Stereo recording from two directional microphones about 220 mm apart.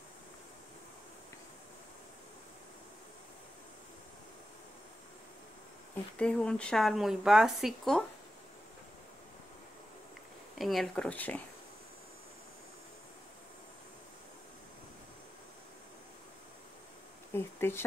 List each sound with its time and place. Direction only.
6.1 s speech: 5° left (ahead or behind)
10.6 s speech: centre (ahead or behind)
17.3 s speech: 10° left (ahead or behind)